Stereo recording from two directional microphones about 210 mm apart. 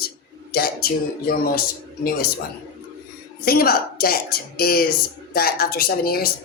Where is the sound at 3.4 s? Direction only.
45° left (ahead or behind).